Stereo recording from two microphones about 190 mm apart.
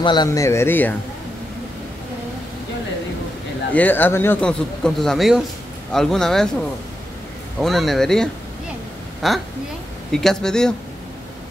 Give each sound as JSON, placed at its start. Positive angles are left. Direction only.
{"t": 0.0, "sound": "speech", "side_deg": 20}
{"t": 3.7, "sound": "speech", "side_deg": 10}
{"t": 7.6, "sound": "speech", "side_deg": 0}